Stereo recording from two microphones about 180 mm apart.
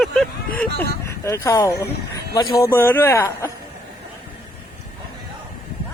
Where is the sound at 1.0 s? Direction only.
15° left (ahead or behind).